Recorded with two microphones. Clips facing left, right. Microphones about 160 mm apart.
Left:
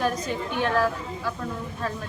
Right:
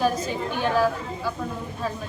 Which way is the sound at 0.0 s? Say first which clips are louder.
Right 2 dB; 5° right (ahead or behind).